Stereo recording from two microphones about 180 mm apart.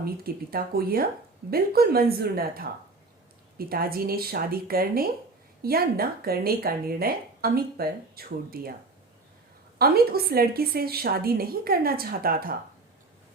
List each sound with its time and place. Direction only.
0.0 s speech: 55° right (ahead or behind)
9.7 s speech: 60° right (ahead or behind)